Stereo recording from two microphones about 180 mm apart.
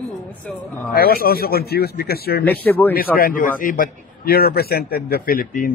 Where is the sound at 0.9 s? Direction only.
55° left (ahead or behind).